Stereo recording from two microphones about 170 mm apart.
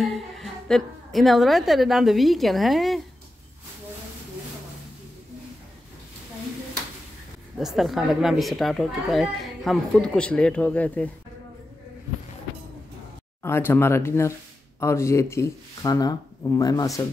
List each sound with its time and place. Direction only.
0.0 s a woman's voice: centre (ahead or behind)
7.5 s speech: centre (ahead or behind)
13.4 s speech: 15° left (ahead or behind)